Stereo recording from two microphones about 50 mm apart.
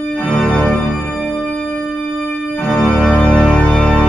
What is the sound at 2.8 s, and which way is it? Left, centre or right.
Organ, left.